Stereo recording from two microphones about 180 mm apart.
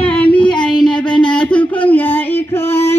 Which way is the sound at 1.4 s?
5° left (ahead or behind).